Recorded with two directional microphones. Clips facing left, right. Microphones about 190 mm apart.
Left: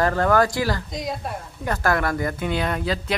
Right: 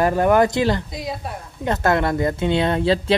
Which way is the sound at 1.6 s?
25° right (ahead or behind).